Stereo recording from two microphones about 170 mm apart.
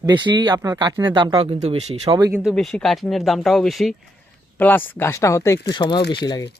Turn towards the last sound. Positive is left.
turn(degrees=25)  # may be behind; listen again after turning